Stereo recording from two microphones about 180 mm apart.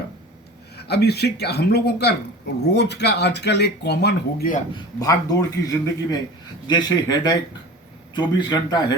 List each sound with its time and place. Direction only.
0.9 s speech: 65° left (ahead or behind)
4.7 s a man's voice: 20° left (ahead or behind)